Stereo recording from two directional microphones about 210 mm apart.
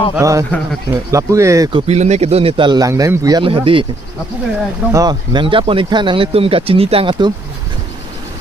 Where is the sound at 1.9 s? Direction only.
30° right (ahead or behind).